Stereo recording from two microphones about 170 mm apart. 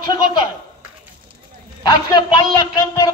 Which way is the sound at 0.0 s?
25° left (ahead or behind).